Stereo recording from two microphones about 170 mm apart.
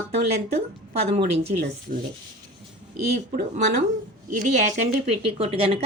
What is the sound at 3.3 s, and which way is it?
Speech, 65° right (ahead or behind).